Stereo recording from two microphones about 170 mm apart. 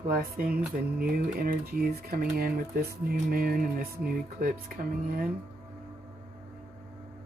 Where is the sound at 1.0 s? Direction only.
60° right (ahead or behind).